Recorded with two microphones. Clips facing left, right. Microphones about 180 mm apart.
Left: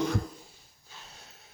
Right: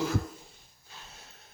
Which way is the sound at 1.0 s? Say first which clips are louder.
Even; centre (ahead or behind).